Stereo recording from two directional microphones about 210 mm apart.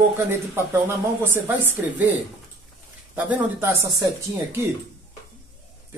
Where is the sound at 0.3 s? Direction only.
10° right (ahead or behind).